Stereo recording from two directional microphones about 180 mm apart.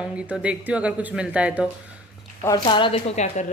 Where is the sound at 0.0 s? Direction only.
5° right (ahead or behind).